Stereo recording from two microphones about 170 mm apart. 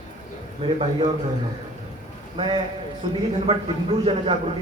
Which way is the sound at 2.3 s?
30° right (ahead or behind).